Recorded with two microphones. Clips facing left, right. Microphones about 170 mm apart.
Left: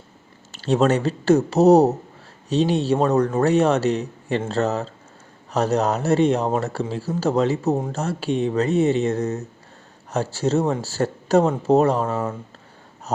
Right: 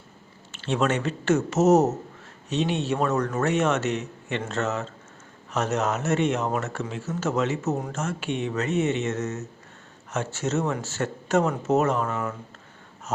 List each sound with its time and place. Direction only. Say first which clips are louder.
0.5 s speech: left 6 dB; 35° left (ahead or behind)